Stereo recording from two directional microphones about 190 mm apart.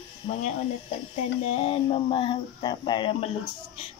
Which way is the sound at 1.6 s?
30° left (ahead or behind).